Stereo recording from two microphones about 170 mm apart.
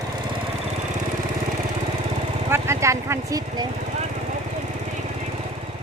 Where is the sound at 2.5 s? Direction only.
15° right (ahead or behind).